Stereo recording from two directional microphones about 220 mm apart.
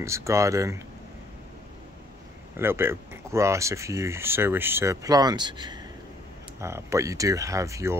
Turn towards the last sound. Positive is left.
turn(degrees=-15)  # may be behind; listen again after turning